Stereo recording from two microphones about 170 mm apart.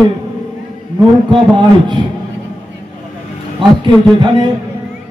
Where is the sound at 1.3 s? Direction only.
30° right (ahead or behind).